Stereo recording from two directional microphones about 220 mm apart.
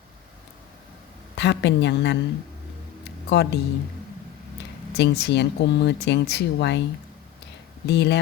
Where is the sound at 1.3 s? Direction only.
50° left (ahead or behind).